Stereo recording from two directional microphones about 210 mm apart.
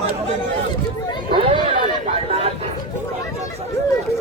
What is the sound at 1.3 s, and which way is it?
Run, 25° right (ahead or behind).